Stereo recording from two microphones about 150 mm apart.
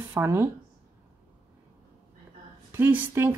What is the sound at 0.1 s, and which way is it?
Speech, 15° right (ahead or behind).